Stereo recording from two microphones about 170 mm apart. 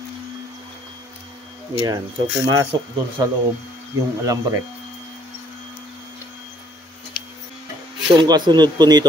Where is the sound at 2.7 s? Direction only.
25° right (ahead or behind).